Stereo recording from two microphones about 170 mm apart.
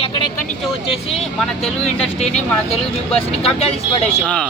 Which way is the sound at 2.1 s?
40° left (ahead or behind).